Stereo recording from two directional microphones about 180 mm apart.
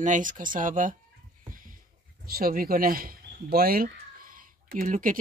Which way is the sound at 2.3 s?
55° right (ahead or behind).